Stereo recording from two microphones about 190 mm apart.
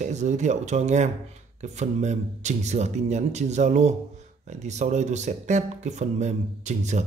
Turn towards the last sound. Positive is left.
turn(degrees=-40)  # may be behind; listen again after turning